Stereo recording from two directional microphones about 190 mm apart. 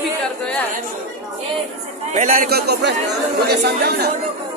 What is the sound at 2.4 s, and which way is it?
A man's voice, 55° right (ahead or behind).